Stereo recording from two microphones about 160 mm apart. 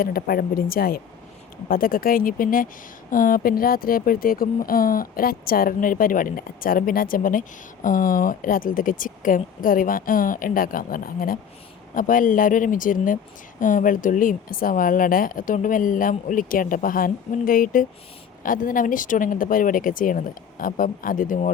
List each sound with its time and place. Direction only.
0.0 s speech: 65° left (ahead or behind)